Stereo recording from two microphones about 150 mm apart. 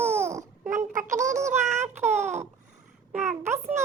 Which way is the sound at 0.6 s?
55° right (ahead or behind).